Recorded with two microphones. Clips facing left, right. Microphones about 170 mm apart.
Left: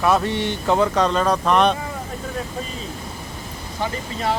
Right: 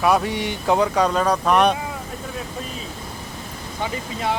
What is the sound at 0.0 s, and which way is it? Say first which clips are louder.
Speech: even; 10° right (ahead or behind).